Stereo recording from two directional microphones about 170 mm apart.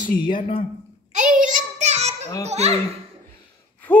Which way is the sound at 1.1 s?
50° right (ahead or behind).